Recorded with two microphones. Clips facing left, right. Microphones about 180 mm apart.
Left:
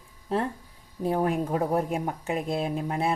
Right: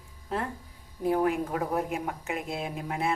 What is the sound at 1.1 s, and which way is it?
Speech, 30° left (ahead or behind).